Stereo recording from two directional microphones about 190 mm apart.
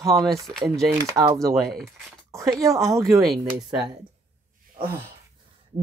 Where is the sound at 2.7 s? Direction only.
Centre (ahead or behind).